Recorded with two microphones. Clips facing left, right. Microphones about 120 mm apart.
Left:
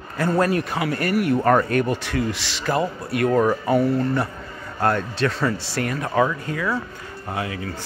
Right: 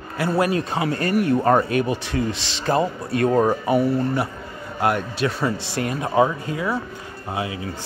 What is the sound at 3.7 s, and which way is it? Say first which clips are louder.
Speech: even; 15° right (ahead or behind).